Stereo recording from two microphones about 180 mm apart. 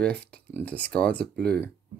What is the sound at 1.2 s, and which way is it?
Speech, 65° right (ahead or behind).